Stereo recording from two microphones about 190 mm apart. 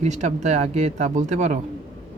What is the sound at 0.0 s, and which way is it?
Speech, 40° right (ahead or behind).